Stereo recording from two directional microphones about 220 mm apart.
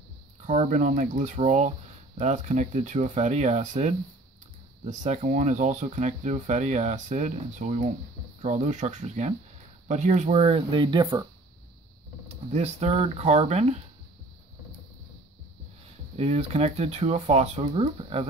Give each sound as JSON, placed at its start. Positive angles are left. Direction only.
{"t": 0.5, "sound": "speech", "side_deg": -35}
{"t": 12.3, "sound": "speech", "side_deg": -30}
{"t": 16.2, "sound": "speech", "side_deg": -25}